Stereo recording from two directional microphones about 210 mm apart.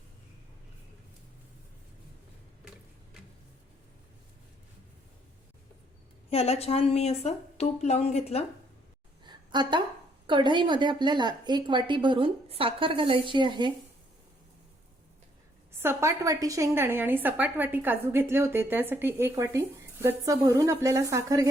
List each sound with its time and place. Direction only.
6.3 s a woman's voice: 30° left (ahead or behind)
9.2 s a sound: 20° right (ahead or behind)
10.2 s a woman's voice: 20° right (ahead or behind)
15.7 s a woman's voice: 10° right (ahead or behind)